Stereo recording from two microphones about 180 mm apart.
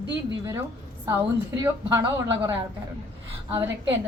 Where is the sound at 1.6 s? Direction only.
15° right (ahead or behind).